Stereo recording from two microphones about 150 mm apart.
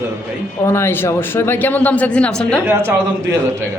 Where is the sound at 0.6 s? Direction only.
15° left (ahead or behind).